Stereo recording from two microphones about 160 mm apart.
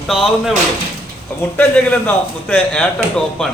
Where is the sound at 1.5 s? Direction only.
10° left (ahead or behind).